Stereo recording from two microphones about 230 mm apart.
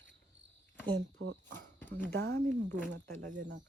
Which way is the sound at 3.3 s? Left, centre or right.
Right.